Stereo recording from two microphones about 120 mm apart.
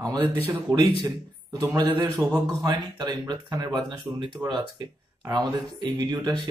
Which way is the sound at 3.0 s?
35° right (ahead or behind).